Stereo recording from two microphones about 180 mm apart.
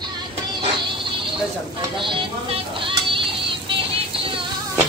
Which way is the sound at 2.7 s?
30° right (ahead or behind).